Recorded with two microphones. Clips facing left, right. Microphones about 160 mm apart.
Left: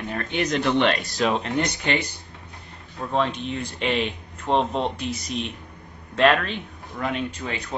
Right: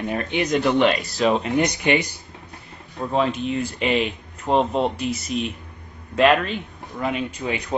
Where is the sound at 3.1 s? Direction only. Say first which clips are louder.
Right 3 dB; 5° right (ahead or behind).